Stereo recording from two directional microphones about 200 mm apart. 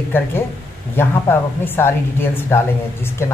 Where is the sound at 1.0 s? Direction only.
10° left (ahead or behind).